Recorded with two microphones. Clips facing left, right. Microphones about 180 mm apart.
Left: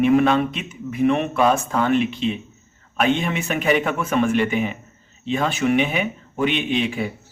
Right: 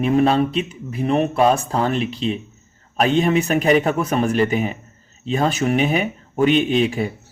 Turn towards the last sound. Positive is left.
turn(degrees=-40)  # may be behind; listen again after turning